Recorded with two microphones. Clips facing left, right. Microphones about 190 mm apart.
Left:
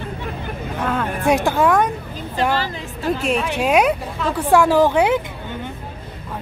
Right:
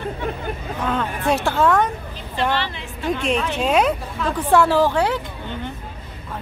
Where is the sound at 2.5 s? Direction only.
40° left (ahead or behind).